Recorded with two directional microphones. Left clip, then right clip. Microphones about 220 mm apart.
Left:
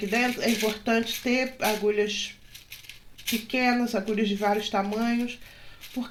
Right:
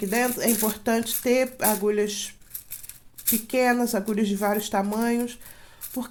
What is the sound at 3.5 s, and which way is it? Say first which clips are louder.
Speech: right 3 dB; 45° right (ahead or behind).